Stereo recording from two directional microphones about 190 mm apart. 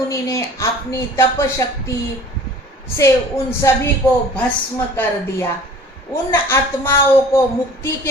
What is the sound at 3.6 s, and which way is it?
Speech, 15° left (ahead or behind).